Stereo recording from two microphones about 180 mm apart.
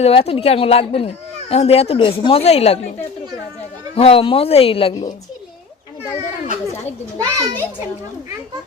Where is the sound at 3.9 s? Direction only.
30° left (ahead or behind).